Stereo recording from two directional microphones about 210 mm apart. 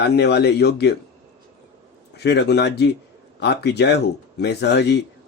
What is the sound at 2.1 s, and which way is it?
A man's voice, 50° left (ahead or behind).